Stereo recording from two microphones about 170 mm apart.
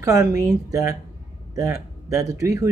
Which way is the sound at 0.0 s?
20° right (ahead or behind).